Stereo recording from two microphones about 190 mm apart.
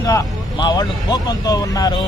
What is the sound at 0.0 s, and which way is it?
Speech, 15° left (ahead or behind).